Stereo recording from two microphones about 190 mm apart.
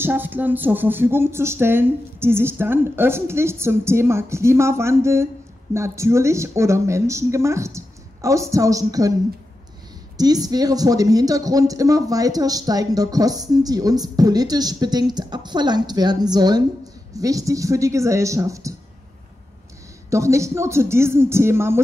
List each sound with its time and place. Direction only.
0.0 s speech: 10° right (ahead or behind)
10.1 s speech: 20° right (ahead or behind)
20.1 s speech: 15° right (ahead or behind)